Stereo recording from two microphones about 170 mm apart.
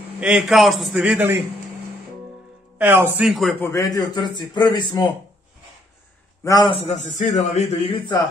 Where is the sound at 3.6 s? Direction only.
15° left (ahead or behind).